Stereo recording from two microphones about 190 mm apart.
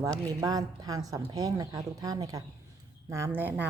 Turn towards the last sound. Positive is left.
turn(degrees=-10)  # may be behind; listen again after turning